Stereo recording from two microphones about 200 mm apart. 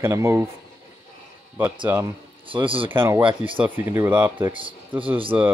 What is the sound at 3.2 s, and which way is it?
Speech, 25° right (ahead or behind).